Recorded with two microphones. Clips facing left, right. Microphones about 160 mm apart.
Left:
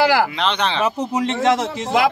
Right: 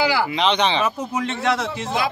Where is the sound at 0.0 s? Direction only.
70° left (ahead or behind).